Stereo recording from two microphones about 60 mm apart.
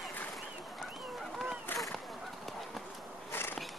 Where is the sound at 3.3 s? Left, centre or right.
Left.